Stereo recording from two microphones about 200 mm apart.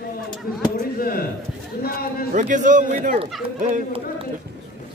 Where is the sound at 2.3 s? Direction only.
40° right (ahead or behind).